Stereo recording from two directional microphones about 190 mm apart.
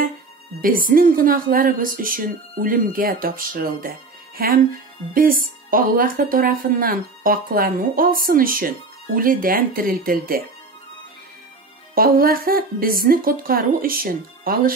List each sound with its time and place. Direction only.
0.6 s speech: 50° right (ahead or behind)
11.9 s speech: 50° right (ahead or behind)